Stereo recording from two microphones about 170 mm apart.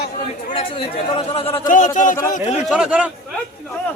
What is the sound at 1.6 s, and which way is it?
Speech, 50° left (ahead or behind).